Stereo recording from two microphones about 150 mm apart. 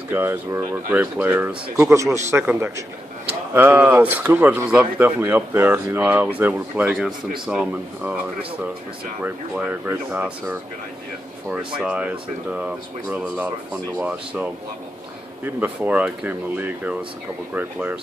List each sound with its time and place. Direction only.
0.1 s speech: 15° right (ahead or behind)
9.2 s speech: 10° right (ahead or behind)